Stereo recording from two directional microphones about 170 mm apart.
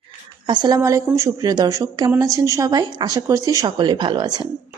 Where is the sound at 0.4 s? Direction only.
25° right (ahead or behind).